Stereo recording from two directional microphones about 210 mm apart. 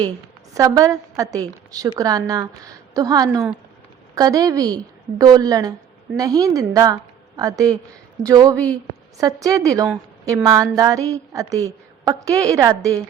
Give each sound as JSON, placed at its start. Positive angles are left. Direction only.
{"t": 0.5, "sound": "a woman's voice", "side_deg": -15}